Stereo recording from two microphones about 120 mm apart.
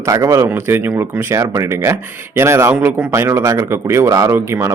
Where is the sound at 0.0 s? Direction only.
25° right (ahead or behind).